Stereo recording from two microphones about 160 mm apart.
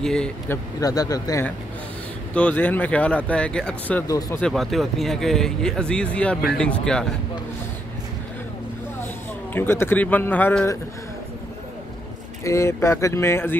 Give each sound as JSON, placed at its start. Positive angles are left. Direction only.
{"t": 0.0, "sound": "speech", "side_deg": 5}
{"t": 0.7, "sound": "speech", "side_deg": 20}
{"t": 2.3, "sound": "speech", "side_deg": 10}
{"t": 9.5, "sound": "speech", "side_deg": 15}
{"t": 12.4, "sound": "speech", "side_deg": 15}